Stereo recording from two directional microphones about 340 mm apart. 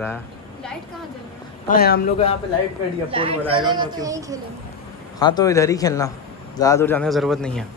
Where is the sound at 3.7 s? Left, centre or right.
Centre.